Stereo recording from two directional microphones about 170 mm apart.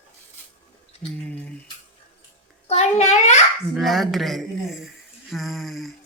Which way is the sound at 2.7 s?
40° left (ahead or behind).